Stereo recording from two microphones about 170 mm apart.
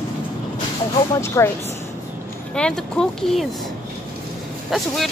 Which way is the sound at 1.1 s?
15° left (ahead or behind).